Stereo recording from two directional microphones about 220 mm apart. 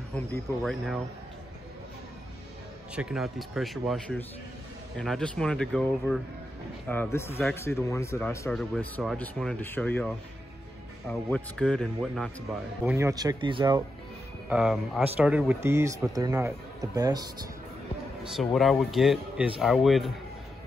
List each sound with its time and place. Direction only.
0.1 s speech: 5° left (ahead or behind)
2.9 s a man's voice: 5° right (ahead or behind)
12.8 s a man's voice: 10° right (ahead or behind)
14.5 s a man's voice: centre (ahead or behind)
18.2 s speech: centre (ahead or behind)